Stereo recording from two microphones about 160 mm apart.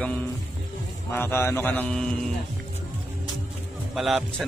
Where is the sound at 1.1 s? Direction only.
15° left (ahead or behind).